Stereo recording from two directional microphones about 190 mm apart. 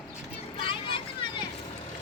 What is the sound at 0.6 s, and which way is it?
Vehicle, 25° left (ahead or behind).